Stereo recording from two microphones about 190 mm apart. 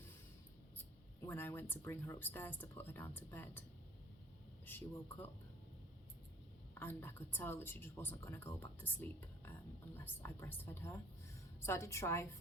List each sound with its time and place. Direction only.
1.3 s speech: 10° left (ahead or behind)
4.6 s speech: 10° left (ahead or behind)
6.7 s speech: 10° left (ahead or behind)